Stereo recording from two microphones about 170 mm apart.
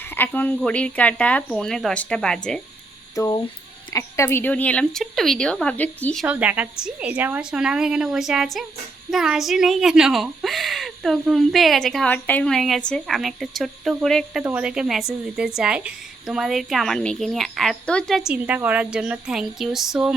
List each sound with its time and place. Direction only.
0.0 s speech: 10° left (ahead or behind)
3.2 s speech: 20° left (ahead or behind)
6.2 s speech: 10° right (ahead or behind)
18.3 s speech: 10° right (ahead or behind)